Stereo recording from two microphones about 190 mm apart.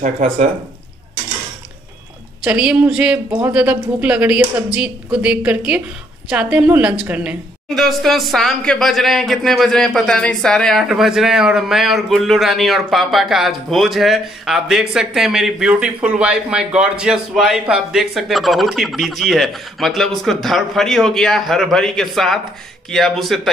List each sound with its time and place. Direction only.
0.0 s speech: 35° right (ahead or behind)
2.4 s a woman's voice: 5° right (ahead or behind)